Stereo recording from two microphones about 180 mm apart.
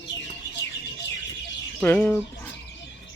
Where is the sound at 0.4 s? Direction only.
70° left (ahead or behind).